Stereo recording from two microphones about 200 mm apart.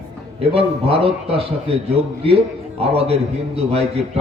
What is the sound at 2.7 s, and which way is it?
Speech, 30° right (ahead or behind).